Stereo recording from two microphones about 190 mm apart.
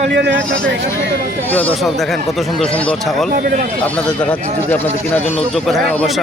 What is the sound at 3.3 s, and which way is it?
Speech, 50° right (ahead or behind).